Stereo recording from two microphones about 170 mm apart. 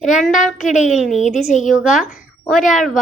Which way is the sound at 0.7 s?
45° left (ahead or behind).